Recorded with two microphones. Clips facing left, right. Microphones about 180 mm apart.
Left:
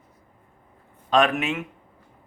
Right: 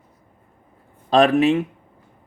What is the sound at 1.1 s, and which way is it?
Speech, 35° right (ahead or behind).